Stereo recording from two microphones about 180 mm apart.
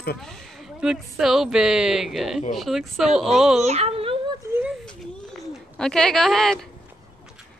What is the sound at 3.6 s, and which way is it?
Speech, 35° right (ahead or behind).